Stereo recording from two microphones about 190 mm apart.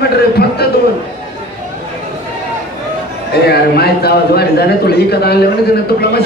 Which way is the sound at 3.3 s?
55° left (ahead or behind).